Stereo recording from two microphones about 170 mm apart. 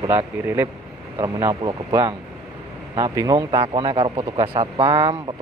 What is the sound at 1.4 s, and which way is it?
Speech, 35° right (ahead or behind).